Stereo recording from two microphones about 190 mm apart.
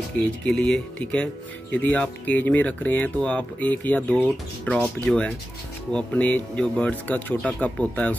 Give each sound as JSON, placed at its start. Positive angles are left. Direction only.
{"t": 0.5, "sound": "speech", "side_deg": 5}